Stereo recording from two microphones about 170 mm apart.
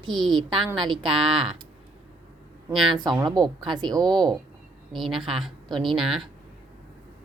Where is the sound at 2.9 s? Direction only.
25° right (ahead or behind).